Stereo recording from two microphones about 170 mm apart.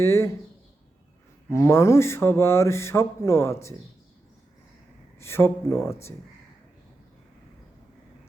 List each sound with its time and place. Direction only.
0.0 s speech: 15° left (ahead or behind)
1.5 s speech: 15° left (ahead or behind)
5.2 s speech: 15° left (ahead or behind)